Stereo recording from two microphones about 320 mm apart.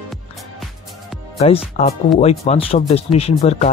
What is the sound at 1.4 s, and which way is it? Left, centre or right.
Speech, centre.